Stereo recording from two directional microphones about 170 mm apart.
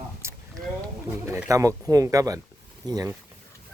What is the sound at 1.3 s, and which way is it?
Speech, 15° right (ahead or behind).